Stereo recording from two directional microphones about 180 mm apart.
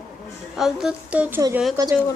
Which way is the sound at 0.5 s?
Centre (ahead or behind).